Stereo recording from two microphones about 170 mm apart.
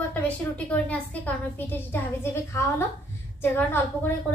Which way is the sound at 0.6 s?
10° left (ahead or behind).